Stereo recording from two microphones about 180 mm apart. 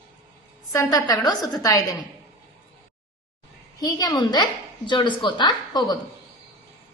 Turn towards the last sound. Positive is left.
turn(degrees=25)  # may be behind; listen again after turning